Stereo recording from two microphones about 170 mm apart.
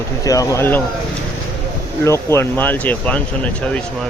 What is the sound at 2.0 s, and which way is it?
Speech, 15° left (ahead or behind).